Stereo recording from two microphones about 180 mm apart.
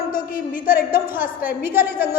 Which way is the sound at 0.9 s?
10° right (ahead or behind).